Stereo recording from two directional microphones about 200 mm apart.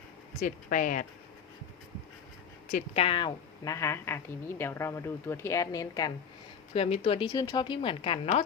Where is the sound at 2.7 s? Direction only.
30° left (ahead or behind).